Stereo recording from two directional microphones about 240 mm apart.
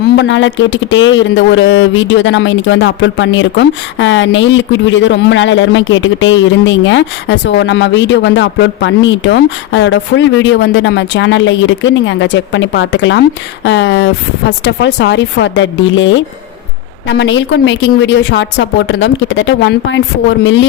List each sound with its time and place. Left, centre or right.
0.2 s speech: left